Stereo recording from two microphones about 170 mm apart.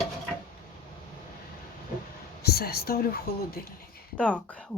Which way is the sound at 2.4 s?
65° left (ahead or behind).